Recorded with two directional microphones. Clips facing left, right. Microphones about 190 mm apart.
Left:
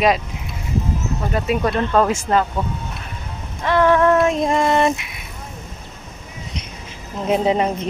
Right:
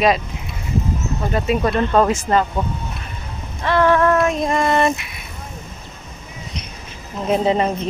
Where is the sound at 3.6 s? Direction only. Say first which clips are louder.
Even; 15° left (ahead or behind).